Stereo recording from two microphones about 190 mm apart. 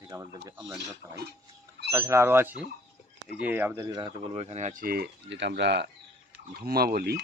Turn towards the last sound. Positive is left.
turn(degrees=-50)  # may be behind; listen again after turning